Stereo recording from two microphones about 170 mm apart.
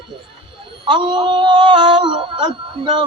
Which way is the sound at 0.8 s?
30° right (ahead or behind).